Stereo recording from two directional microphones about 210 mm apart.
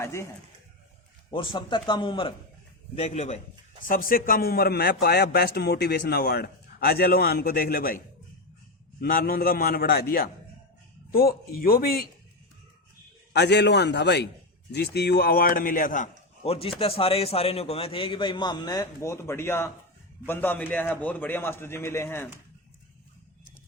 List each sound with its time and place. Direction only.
0.0 s a man's voice: 15° left (ahead or behind)
1.3 s a man's voice: 20° left (ahead or behind); by 12.0 s 45° left (ahead or behind)
13.3 s a man's voice: 55° left (ahead or behind)
16.4 s a man's voice: 25° left (ahead or behind); by 22.3 s 10° left (ahead or behind)